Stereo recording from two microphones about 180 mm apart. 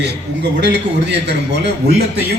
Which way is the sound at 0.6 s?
75° right (ahead or behind).